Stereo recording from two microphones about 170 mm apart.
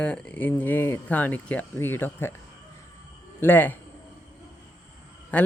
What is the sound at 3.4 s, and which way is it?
Speech, 10° left (ahead or behind).